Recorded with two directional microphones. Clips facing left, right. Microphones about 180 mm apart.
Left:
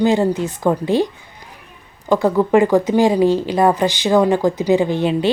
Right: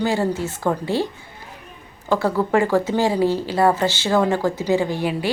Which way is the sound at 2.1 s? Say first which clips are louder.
Left 5 dB; 15° left (ahead or behind).